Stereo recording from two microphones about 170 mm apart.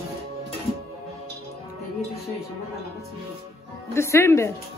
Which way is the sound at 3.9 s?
15° left (ahead or behind).